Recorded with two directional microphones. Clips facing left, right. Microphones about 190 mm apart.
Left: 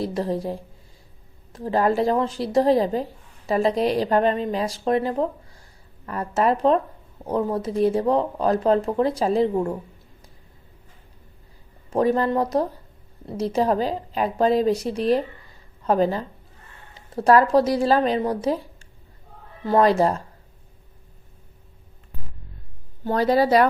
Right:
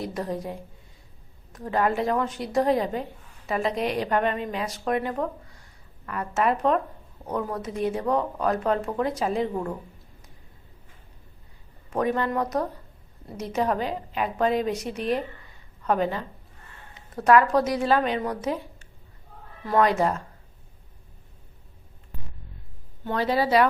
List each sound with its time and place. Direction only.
0.0 s a woman's voice: 30° left (ahead or behind)
11.9 s a woman's voice: 30° left (ahead or behind)
23.0 s a woman's voice: 40° left (ahead or behind)